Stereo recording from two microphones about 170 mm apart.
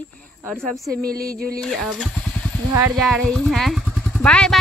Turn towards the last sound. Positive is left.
turn(degrees=5)  # may be behind; listen again after turning